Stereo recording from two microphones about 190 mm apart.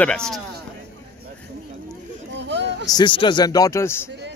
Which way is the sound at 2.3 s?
65° right (ahead or behind).